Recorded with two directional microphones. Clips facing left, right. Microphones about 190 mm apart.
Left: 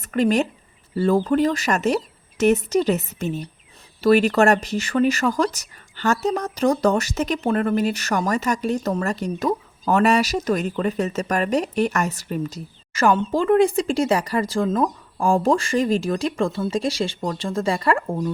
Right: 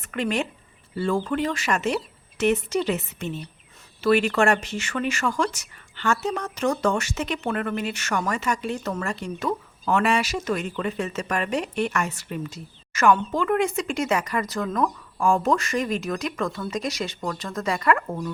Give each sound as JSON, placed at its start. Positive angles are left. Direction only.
{"t": 0.0, "sound": "speech", "side_deg": 40}